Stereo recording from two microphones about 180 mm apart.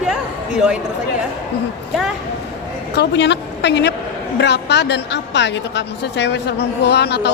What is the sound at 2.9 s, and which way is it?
A woman's voice, 75° left (ahead or behind).